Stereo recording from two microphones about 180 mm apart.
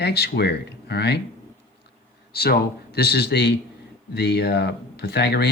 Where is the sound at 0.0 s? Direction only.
65° left (ahead or behind).